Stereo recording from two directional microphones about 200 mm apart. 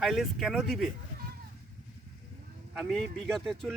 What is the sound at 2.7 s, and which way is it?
Speech, 5° right (ahead or behind).